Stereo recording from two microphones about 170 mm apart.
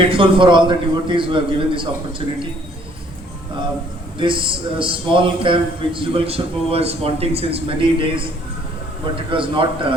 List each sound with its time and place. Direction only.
0.0 s a man's voice: 30° right (ahead or behind)
4.2 s a man's voice: 30° right (ahead or behind)
9.3 s a man's voice: 30° right (ahead or behind)